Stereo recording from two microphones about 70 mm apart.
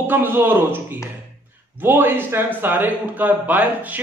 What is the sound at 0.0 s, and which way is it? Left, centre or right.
A man's voice, right.